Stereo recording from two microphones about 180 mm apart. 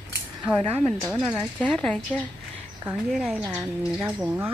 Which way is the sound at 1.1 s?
25° right (ahead or behind).